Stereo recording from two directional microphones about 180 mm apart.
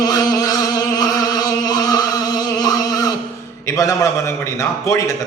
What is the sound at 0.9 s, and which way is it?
Chant, 20° left (ahead or behind).